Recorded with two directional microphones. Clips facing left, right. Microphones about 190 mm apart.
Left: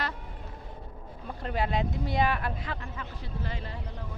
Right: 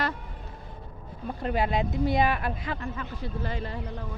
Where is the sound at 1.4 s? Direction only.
10° right (ahead or behind).